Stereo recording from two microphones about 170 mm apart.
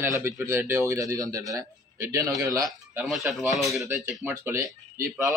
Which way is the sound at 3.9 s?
15° right (ahead or behind).